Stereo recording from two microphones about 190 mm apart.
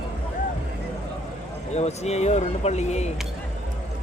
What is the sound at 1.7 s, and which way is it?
Speech, 35° left (ahead or behind).